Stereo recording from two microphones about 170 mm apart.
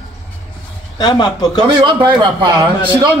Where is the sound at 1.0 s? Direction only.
25° left (ahead or behind).